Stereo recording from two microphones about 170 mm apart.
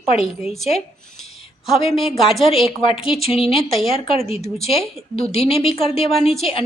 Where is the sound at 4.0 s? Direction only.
35° left (ahead or behind).